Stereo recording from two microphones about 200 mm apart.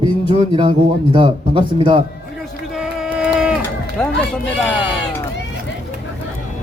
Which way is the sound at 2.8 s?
5° right (ahead or behind).